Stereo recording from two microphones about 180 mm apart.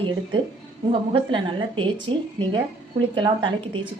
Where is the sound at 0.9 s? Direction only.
25° right (ahead or behind).